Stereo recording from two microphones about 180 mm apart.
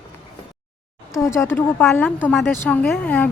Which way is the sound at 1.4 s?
10° left (ahead or behind).